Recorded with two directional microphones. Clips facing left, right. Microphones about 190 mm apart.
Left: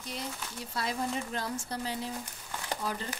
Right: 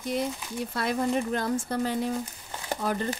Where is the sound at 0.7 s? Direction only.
60° right (ahead or behind).